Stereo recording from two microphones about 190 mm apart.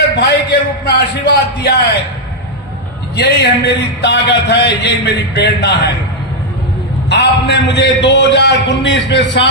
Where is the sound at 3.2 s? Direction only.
60° left (ahead or behind).